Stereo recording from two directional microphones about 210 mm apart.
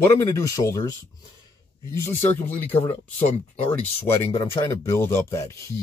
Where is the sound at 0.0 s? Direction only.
15° left (ahead or behind).